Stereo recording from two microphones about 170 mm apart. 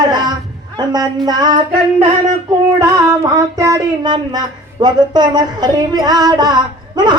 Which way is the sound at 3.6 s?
20° right (ahead or behind).